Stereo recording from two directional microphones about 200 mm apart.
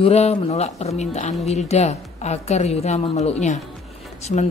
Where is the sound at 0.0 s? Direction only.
30° left (ahead or behind).